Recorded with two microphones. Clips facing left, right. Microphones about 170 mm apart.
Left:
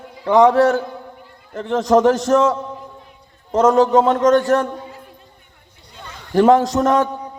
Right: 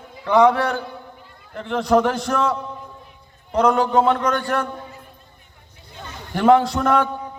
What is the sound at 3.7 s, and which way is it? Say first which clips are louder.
Speech: left 6 dB; 40° left (ahead or behind).